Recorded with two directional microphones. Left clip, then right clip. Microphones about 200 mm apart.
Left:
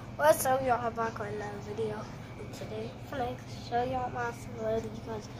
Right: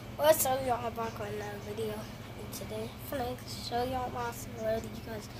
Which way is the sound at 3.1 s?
25° right (ahead or behind).